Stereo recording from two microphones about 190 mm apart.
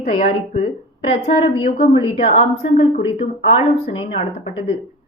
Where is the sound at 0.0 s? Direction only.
30° left (ahead or behind).